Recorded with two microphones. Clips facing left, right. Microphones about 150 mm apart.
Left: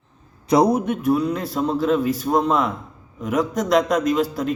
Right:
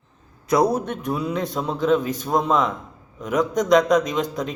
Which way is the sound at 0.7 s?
5° left (ahead or behind).